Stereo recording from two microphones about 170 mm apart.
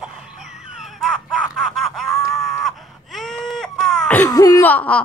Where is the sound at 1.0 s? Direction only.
Centre (ahead or behind).